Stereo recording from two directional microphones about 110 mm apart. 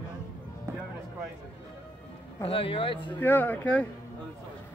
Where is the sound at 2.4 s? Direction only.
55° left (ahead or behind).